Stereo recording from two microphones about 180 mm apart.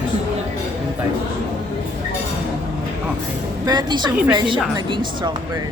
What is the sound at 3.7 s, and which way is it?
Music, 25° right (ahead or behind).